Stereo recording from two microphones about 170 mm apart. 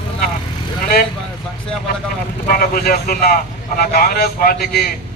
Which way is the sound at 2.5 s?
60° left (ahead or behind).